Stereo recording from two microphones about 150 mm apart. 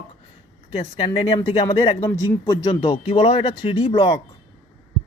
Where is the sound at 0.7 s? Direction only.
45° left (ahead or behind).